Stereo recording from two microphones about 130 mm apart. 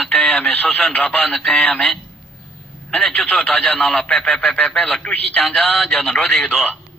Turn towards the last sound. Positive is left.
turn(degrees=0)  # may be behind; listen again after turning